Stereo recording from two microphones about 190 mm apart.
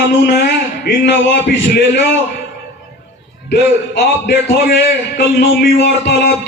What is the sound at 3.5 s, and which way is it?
A man's voice, 60° left (ahead or behind).